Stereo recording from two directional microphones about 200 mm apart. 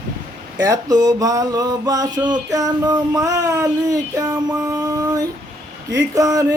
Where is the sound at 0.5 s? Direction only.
20° right (ahead or behind).